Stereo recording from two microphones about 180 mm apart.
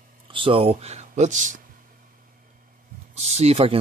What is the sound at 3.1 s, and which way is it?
Speech, 35° right (ahead or behind).